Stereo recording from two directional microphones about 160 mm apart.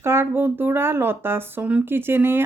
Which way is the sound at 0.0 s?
15° right (ahead or behind).